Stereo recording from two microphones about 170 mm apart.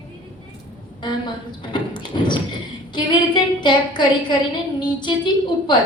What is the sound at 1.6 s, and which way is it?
A woman's voice, 25° left (ahead or behind).